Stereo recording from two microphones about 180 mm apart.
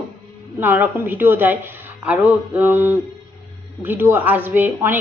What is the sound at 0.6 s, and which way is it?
A woman's voice, 10° right (ahead or behind).